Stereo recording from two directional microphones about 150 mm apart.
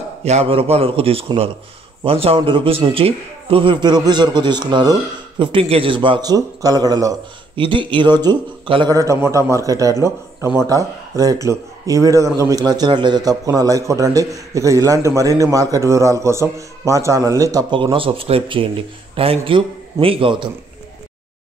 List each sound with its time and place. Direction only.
0.2 s a man's voice: 45° right (ahead or behind)
8.9 s a man's voice: 20° right (ahead or behind); by 20.4 s 35° right (ahead or behind)